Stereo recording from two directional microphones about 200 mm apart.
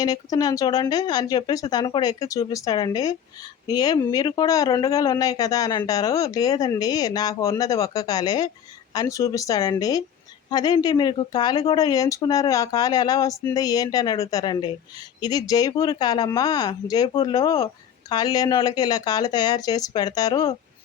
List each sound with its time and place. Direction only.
0.0 s speech: 20° left (ahead or behind)